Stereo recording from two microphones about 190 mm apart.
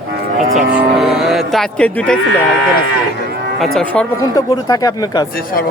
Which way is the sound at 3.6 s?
5° left (ahead or behind).